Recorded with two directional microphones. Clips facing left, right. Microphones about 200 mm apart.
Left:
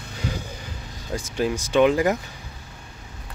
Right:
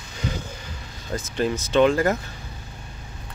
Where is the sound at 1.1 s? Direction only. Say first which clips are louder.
Even; 10° left (ahead or behind).